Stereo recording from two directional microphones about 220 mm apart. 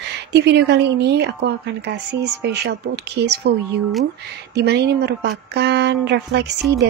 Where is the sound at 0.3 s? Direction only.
50° right (ahead or behind).